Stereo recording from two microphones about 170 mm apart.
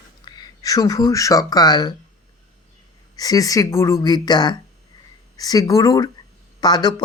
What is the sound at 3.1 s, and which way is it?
Speech, 20° left (ahead or behind).